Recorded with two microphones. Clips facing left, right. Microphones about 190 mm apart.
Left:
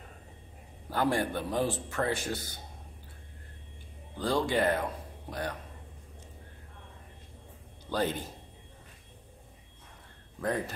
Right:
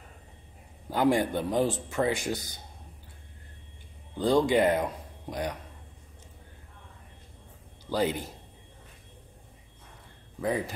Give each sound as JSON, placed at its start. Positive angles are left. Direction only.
{"t": 0.8, "sound": "speech", "side_deg": -15}
{"t": 4.2, "sound": "speech", "side_deg": -20}
{"t": 7.9, "sound": "speech", "side_deg": -10}